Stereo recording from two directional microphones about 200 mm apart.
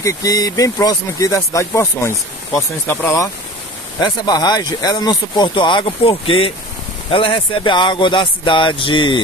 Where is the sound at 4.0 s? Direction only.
20° left (ahead or behind).